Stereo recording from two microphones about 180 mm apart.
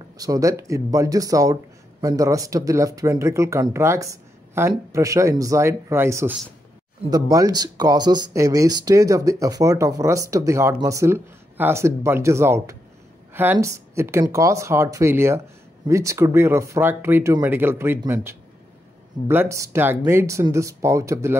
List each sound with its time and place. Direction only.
0.2 s speech: 20° right (ahead or behind)